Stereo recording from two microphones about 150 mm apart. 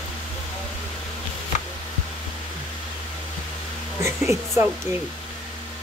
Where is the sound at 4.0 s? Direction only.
20° right (ahead or behind).